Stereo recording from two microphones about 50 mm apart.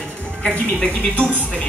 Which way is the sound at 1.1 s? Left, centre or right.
Right.